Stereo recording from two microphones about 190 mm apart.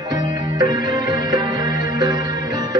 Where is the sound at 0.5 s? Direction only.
20° right (ahead or behind).